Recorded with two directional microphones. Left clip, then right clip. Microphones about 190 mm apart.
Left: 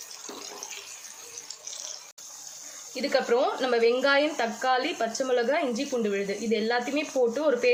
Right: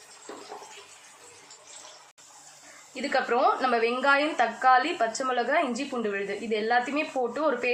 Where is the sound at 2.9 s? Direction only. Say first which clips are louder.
Left 1 dB; 35° left (ahead or behind).